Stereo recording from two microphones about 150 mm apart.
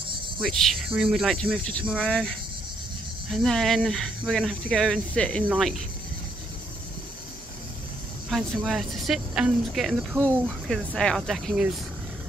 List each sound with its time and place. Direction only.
0.4 s speech: centre (ahead or behind)
8.3 s speech: centre (ahead or behind)